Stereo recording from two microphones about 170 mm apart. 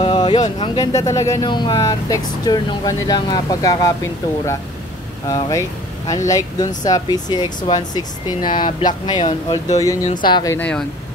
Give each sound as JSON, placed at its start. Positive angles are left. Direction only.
{"t": 0.0, "sound": "speech", "side_deg": 30}